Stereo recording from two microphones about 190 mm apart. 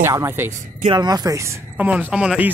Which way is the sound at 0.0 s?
15° right (ahead or behind).